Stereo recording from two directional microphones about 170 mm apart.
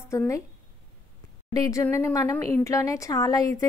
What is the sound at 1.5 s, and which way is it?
A woman's voice, 20° left (ahead or behind).